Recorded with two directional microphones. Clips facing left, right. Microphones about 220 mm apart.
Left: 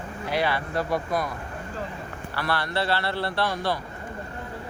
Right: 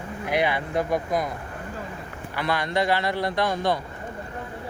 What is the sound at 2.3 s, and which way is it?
A man's voice, 15° right (ahead or behind).